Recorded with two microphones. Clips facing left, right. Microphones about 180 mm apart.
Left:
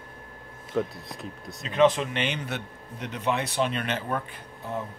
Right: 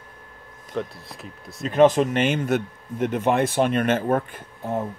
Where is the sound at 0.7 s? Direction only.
Centre (ahead or behind).